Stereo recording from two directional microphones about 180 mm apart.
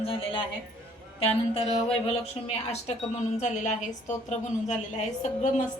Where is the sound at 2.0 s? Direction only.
35° left (ahead or behind).